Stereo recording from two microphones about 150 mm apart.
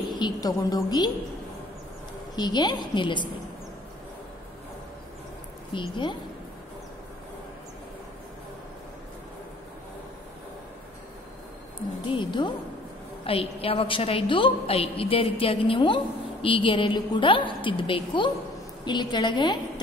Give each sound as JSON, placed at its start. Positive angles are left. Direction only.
{"t": 0.1, "sound": "a woman's voice", "side_deg": 25}
{"t": 2.3, "sound": "a woman's voice", "side_deg": 30}
{"t": 5.7, "sound": "a woman's voice", "side_deg": 30}
{"t": 12.1, "sound": "a woman's voice", "side_deg": 30}